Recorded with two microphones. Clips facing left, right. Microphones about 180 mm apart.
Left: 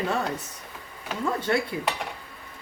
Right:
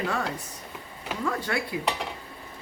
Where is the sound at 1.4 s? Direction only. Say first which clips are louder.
Left 5 dB; 25° left (ahead or behind).